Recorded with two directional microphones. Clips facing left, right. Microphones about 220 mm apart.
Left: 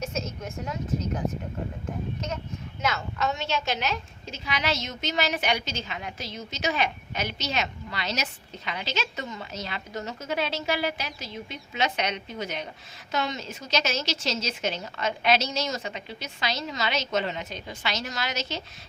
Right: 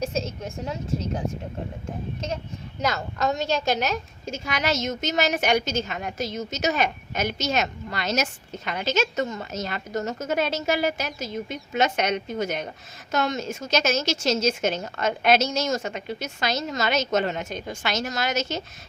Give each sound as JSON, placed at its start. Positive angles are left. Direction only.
{"t": 0.0, "sound": "a woman's voice", "side_deg": -30}
{"t": 2.8, "sound": "a woman's voice", "side_deg": -40}